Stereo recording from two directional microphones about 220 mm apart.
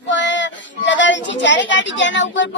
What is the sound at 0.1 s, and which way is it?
Speech, 55° left (ahead or behind).